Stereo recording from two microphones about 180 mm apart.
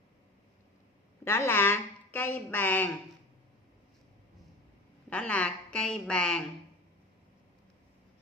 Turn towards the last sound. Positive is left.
turn(degrees=5)  # may be behind; listen again after turning